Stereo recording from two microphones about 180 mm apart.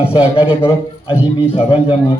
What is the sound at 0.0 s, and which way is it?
A man's voice, 30° left (ahead or behind).